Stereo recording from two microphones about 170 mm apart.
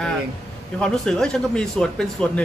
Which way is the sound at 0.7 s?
5° left (ahead or behind).